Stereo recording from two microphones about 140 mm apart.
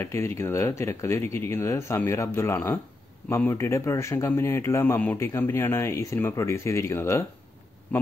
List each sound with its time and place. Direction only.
0.0 s speech: 20° left (ahead or behind)